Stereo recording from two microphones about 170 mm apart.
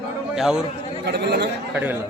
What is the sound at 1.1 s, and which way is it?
Speech, 75° right (ahead or behind).